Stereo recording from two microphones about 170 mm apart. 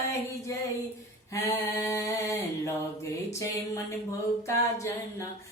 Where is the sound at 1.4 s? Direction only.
15° left (ahead or behind).